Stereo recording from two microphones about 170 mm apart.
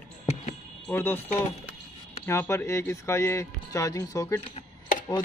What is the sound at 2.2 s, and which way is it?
Speech, 15° left (ahead or behind).